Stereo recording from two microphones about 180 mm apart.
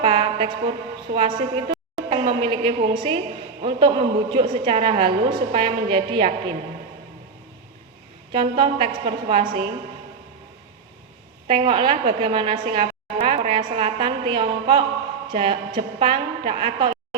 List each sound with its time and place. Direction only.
0.0 s music: 35° right (ahead or behind)
1.1 s a woman's voice: 30° right (ahead or behind)
8.3 s a woman's voice: 30° right (ahead or behind)
11.4 s a woman's voice: 30° right (ahead or behind)